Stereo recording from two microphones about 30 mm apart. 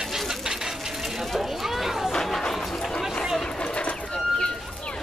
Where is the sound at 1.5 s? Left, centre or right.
Centre.